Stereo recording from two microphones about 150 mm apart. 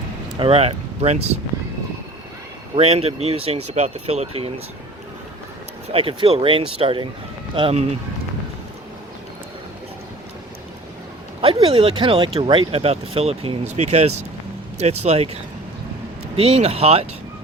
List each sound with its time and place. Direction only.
0.3 s speech: 40° right (ahead or behind)
2.7 s speech: 40° right (ahead or behind)
5.9 s speech: 40° right (ahead or behind)
11.4 s speech: 35° right (ahead or behind)